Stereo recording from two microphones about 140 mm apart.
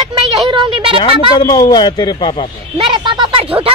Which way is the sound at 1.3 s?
30° left (ahead or behind).